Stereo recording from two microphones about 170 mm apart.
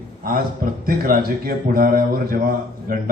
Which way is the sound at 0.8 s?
60° right (ahead or behind).